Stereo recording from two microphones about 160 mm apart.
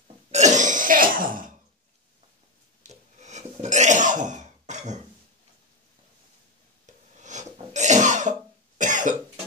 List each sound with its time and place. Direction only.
0.3 s throat clearing: 45° right (ahead or behind)
2.8 s a sound: 45° right (ahead or behind)
7.2 s cough: 45° right (ahead or behind)